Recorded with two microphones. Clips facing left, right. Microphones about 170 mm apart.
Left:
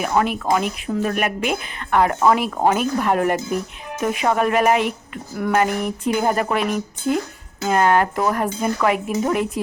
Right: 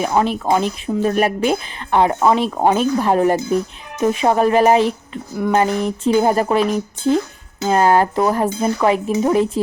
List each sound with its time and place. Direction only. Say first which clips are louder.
0.0 s speech: right 2 dB; 30° right (ahead or behind)